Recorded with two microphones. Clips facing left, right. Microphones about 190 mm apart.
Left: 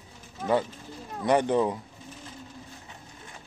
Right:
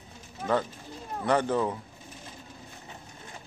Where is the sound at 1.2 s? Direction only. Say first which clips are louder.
Left 3 dB; 15° left (ahead or behind).